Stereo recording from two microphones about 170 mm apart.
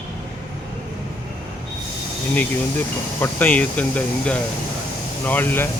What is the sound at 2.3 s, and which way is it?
Speech, 10° left (ahead or behind).